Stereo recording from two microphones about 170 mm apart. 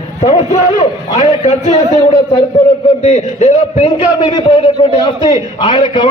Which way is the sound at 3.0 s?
45° left (ahead or behind).